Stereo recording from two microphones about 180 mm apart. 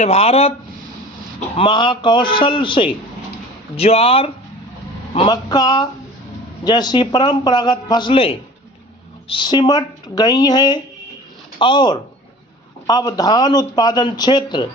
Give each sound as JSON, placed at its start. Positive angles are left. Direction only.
{"t": 0.0, "sound": "speech", "side_deg": 35}
{"t": 1.5, "sound": "speech", "side_deg": 25}